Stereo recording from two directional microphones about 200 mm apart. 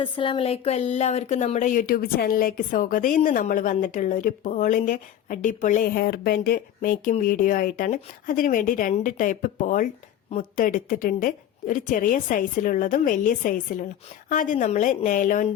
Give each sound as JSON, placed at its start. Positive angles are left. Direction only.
{"t": 0.0, "sound": "a woman's voice", "side_deg": 25}